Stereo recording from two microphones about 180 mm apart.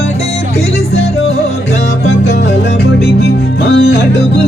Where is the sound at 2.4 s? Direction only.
70° left (ahead or behind).